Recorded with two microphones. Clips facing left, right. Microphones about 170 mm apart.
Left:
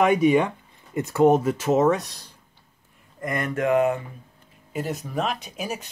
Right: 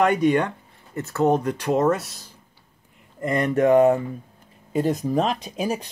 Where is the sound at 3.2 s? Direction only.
30° right (ahead or behind).